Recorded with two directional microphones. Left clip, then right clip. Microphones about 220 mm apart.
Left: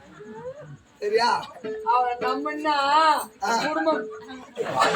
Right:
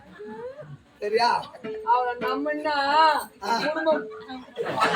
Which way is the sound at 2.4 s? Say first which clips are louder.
Left 1 dB; 25° left (ahead or behind).